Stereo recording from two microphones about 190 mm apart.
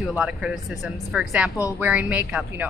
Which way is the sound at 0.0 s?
5° right (ahead or behind).